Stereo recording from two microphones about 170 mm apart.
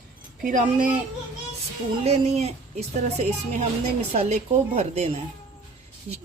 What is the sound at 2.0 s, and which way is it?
A woman's voice, 40° right (ahead or behind).